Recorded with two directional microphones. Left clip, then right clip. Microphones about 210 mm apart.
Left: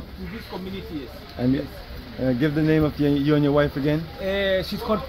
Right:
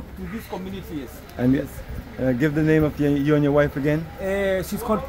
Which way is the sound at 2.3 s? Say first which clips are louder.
Right 1 dB; 5° right (ahead or behind).